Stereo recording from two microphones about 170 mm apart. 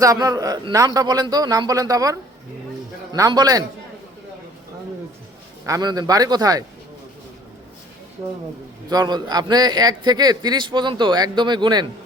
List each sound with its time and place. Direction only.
0.0 s a man's voice: 20° right (ahead or behind)
5.6 s a man's voice: 20° right (ahead or behind)
8.9 s a man's voice: 25° right (ahead or behind)